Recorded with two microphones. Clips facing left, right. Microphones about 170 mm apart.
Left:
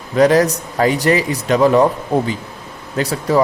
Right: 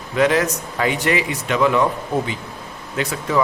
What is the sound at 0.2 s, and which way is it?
Speech, 40° left (ahead or behind).